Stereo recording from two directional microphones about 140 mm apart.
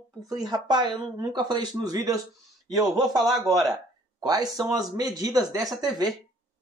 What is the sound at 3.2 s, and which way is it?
Speech, centre (ahead or behind).